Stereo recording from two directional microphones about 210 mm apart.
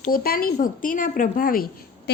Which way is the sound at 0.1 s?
45° left (ahead or behind).